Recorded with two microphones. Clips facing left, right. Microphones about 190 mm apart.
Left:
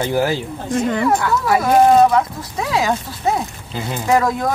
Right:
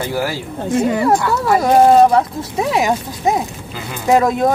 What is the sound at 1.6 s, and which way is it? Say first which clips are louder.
Speech: right 2 dB; 30° right (ahead or behind).